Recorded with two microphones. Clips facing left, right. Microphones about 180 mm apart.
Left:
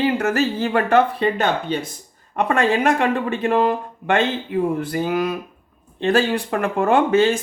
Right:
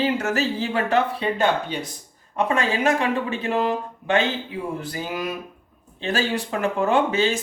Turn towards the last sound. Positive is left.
turn(degrees=55)  # may be behind; listen again after turning